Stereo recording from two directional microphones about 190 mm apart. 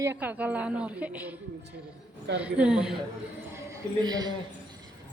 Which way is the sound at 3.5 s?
20° right (ahead or behind).